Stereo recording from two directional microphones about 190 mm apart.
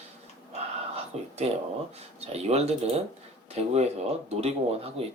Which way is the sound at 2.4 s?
35° right (ahead or behind).